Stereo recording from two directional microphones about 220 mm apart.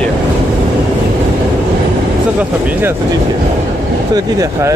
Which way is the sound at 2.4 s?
5° right (ahead or behind).